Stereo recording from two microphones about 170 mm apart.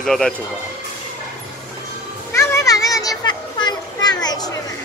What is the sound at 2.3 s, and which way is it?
Children playing, 20° left (ahead or behind).